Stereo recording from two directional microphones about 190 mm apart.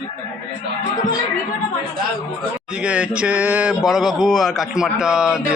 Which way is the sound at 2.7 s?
5° right (ahead or behind).